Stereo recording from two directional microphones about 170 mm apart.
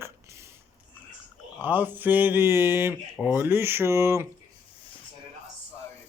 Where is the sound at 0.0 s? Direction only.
15° right (ahead or behind).